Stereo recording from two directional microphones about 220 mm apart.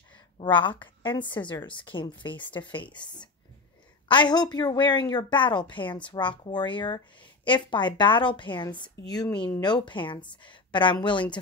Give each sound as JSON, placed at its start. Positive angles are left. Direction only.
{"t": 0.4, "sound": "a woman's voice", "side_deg": 20}